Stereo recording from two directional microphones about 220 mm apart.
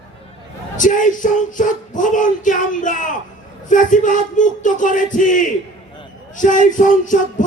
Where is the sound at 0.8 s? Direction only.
35° left (ahead or behind).